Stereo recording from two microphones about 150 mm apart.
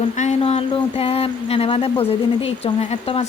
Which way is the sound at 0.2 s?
50° left (ahead or behind).